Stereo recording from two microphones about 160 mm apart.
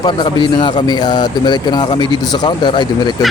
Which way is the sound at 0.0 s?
30° left (ahead or behind).